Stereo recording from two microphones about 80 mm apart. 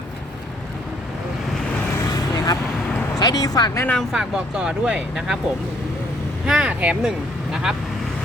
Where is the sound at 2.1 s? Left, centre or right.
Left.